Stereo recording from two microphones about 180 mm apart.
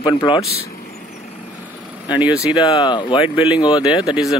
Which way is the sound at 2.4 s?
30° left (ahead or behind).